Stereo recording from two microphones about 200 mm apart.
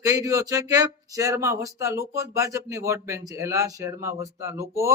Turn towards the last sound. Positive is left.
turn(degrees=-15)  # may be behind; listen again after turning